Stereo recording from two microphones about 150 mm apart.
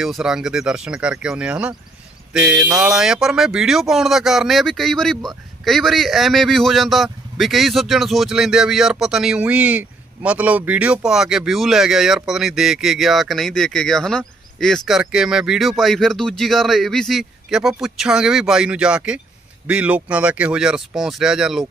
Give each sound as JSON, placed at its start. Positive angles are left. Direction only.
{"t": 0.0, "sound": "speech", "side_deg": -5}